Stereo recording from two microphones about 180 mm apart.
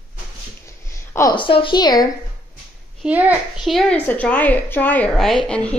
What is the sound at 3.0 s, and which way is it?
A child's voice, 10° right (ahead or behind).